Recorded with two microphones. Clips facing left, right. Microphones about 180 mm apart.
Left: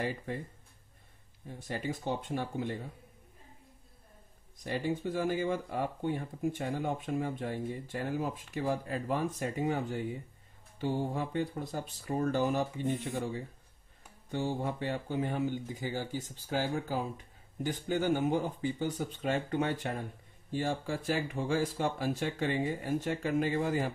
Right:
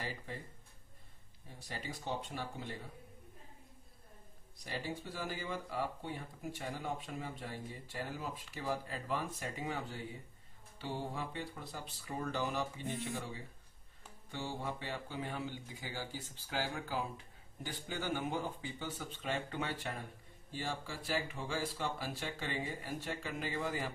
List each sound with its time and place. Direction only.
0.0 s speech: 55° left (ahead or behind)
1.7 s speech: 50° left (ahead or behind)
4.6 s speech: 50° left (ahead or behind)